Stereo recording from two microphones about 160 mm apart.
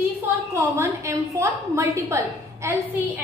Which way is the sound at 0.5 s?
15° right (ahead or behind).